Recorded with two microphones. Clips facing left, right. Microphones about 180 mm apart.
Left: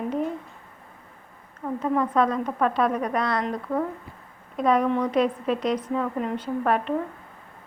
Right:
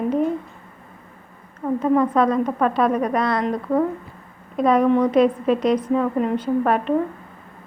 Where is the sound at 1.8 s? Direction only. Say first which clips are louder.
Right 5 dB; 55° right (ahead or behind).